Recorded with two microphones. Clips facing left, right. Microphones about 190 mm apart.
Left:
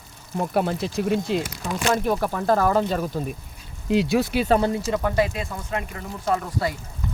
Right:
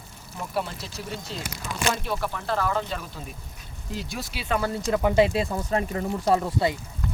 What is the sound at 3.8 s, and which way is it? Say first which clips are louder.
Speech: left 14 dB; 80° left.